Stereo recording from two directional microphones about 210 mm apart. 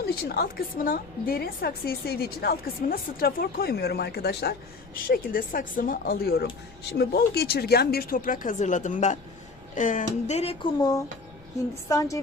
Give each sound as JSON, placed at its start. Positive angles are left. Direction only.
{"t": 0.3, "sound": "a woman's voice", "side_deg": 45}